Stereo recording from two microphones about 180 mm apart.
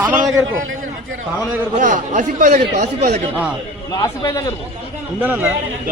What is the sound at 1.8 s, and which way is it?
A man's voice, 45° right (ahead or behind).